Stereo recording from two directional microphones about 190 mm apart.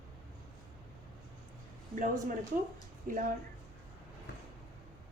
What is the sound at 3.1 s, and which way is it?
Speech, 45° right (ahead or behind).